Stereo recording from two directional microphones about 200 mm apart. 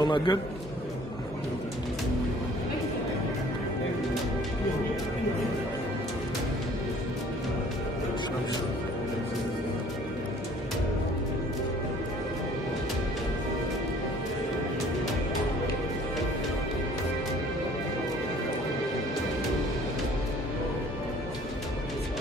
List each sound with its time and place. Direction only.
0.0 s a man's voice: 20° left (ahead or behind)